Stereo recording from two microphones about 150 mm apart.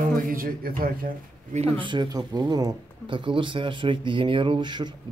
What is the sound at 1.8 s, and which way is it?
Speech, 30° right (ahead or behind).